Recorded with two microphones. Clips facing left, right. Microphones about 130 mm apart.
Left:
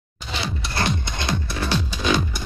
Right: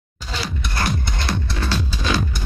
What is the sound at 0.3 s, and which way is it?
Music, 25° left (ahead or behind).